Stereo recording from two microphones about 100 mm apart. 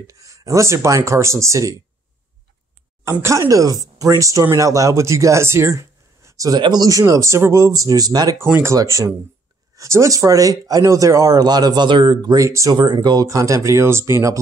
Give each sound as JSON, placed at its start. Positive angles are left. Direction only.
{"t": 0.0, "sound": "speech", "side_deg": -35}
{"t": 3.1, "sound": "speech", "side_deg": -25}
{"t": 8.5, "sound": "speech", "side_deg": -20}
{"t": 8.7, "sound": "speech", "side_deg": -35}
{"t": 12.4, "sound": "speech", "side_deg": -30}
{"t": 12.7, "sound": "speech", "side_deg": -50}